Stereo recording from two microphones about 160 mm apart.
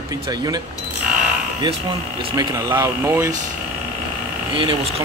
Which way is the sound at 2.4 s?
20° right (ahead or behind).